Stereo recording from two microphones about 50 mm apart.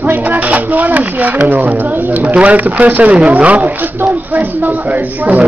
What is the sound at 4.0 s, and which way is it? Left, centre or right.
Speech, right.